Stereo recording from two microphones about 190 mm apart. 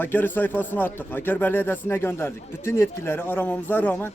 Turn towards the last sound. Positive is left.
turn(degrees=10)  # may be behind; listen again after turning